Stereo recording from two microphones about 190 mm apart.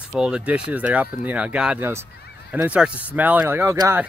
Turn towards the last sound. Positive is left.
turn(degrees=-15)  # may be behind; listen again after turning